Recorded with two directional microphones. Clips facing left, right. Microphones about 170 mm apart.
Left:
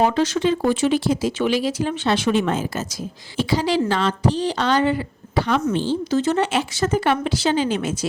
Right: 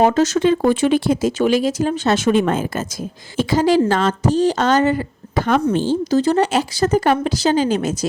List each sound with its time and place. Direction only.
0.0 s speech: 45° right (ahead or behind)